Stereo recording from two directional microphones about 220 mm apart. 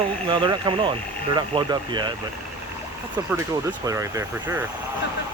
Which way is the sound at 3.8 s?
15° right (ahead or behind).